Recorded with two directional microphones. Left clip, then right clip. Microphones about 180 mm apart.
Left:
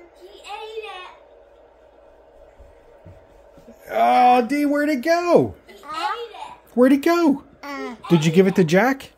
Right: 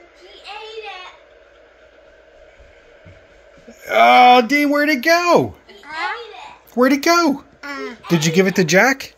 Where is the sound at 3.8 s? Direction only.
15° right (ahead or behind); by 5.5 s 5° left (ahead or behind).